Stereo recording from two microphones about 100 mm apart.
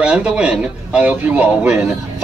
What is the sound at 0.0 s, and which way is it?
A man's voice, 10° right (ahead or behind).